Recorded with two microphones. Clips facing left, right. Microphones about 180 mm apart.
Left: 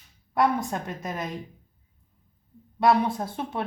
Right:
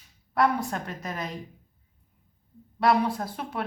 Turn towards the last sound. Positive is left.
turn(degrees=25)  # may be behind; listen again after turning